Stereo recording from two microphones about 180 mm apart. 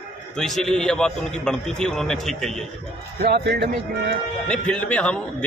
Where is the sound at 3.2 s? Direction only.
60° right (ahead or behind).